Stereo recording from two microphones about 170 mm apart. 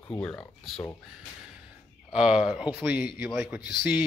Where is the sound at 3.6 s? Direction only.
65° left (ahead or behind).